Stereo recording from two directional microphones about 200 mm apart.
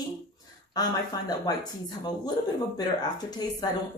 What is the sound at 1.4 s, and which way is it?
A woman's voice, 20° left (ahead or behind).